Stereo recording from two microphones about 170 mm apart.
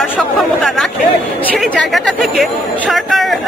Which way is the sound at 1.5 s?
5° left (ahead or behind).